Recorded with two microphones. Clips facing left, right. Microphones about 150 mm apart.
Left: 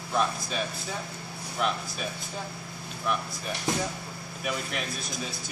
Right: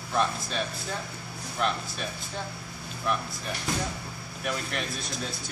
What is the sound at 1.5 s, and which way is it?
Speech, 5° left (ahead or behind).